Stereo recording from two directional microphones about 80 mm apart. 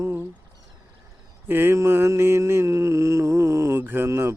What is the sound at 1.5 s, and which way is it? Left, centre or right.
Mantra, right.